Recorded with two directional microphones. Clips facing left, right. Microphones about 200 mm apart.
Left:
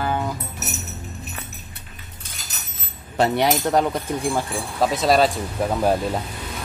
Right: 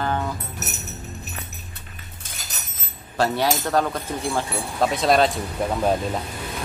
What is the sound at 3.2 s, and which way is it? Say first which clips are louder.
Speech: left 3 dB; 20° left (ahead or behind).